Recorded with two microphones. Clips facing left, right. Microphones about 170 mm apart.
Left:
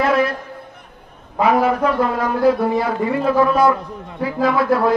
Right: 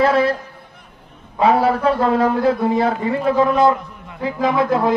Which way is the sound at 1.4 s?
30° right (ahead or behind).